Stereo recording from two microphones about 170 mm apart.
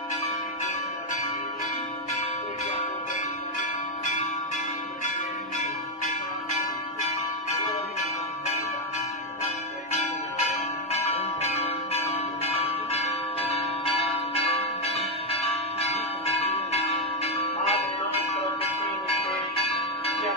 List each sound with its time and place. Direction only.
4.0 s church bell: 45° left (ahead or behind)
6.5 s church bell: 40° left (ahead or behind)
10.9 s church bell: 40° left (ahead or behind)